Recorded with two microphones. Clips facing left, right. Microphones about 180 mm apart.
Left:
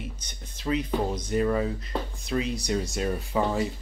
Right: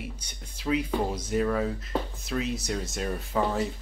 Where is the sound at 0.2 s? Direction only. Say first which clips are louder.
Left 1 dB; 10° right (ahead or behind).